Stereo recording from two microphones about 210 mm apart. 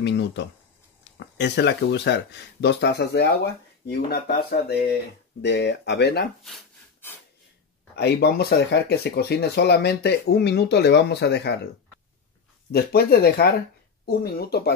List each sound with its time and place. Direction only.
0.0 s speech: 55° left (ahead or behind)
6.4 s a sound: 5° left (ahead or behind)
7.9 s speech: 50° left (ahead or behind)
12.7 s speech: 50° left (ahead or behind)